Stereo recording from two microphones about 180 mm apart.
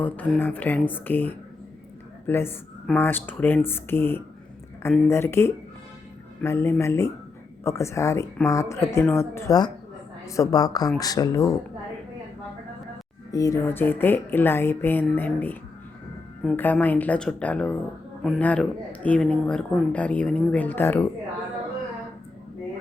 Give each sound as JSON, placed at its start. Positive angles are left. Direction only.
{"t": 0.0, "sound": "speech", "side_deg": 10}
{"t": 13.3, "sound": "speech", "side_deg": 20}